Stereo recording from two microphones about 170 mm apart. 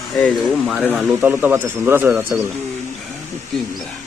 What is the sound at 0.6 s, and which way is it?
Speech, 5° right (ahead or behind).